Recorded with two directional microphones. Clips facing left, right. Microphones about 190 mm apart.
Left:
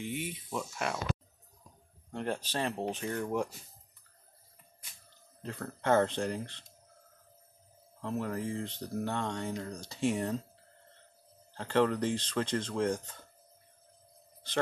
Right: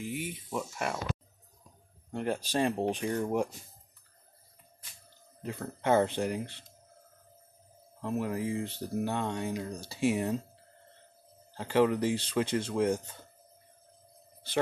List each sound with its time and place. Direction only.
0.0 s speech: 5° right (ahead or behind)
2.0 s speech: 10° right (ahead or behind)
5.4 s speech: 10° right (ahead or behind)
8.0 s speech: 10° right (ahead or behind)
11.5 s speech: 10° right (ahead or behind)